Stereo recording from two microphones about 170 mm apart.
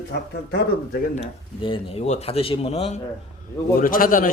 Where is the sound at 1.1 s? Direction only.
35° left (ahead or behind).